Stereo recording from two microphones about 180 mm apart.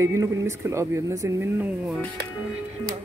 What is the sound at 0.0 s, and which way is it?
Speech, 15° right (ahead or behind).